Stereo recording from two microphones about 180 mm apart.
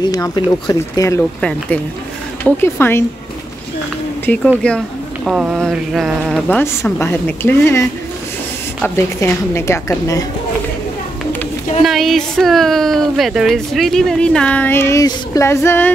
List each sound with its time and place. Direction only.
0.0 s speech: 20° left (ahead or behind)
2.4 s speech: 10° left (ahead or behind)
4.3 s speech: 10° left (ahead or behind)
4.6 s a sound: 5° left (ahead or behind)
5.3 s speech: 5° right (ahead or behind); by 7.8 s 10° left (ahead or behind)
8.8 s speech: 15° left (ahead or behind)
11.8 s speech: centre (ahead or behind)